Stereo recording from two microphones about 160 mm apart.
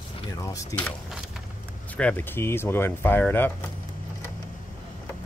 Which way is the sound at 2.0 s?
10° left (ahead or behind).